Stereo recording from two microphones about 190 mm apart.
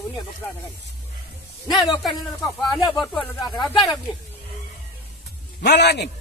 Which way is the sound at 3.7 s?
20° left (ahead or behind).